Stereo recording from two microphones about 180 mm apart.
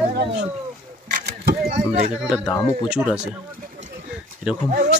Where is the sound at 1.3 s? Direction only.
60° right (ahead or behind).